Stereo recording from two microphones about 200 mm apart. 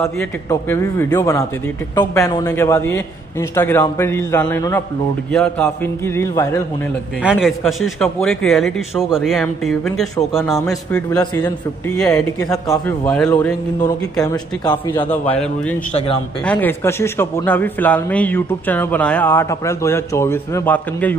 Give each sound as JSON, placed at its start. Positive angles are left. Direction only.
{"t": 0.0, "sound": "a man's voice", "side_deg": 10}
{"t": 7.2, "sound": "a man's voice", "side_deg": -5}
{"t": 11.1, "sound": "a man's voice", "side_deg": 15}
{"t": 12.6, "sound": "a man's voice", "side_deg": 15}
{"t": 13.0, "sound": "a man's voice", "side_deg": 5}
{"t": 14.2, "sound": "speech", "side_deg": 20}
{"t": 15.0, "sound": "a man's voice", "side_deg": 10}